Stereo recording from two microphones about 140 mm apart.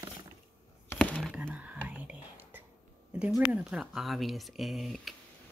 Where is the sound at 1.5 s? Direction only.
10° right (ahead or behind).